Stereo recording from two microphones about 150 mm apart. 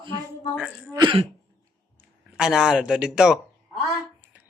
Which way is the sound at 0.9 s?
35° right (ahead or behind).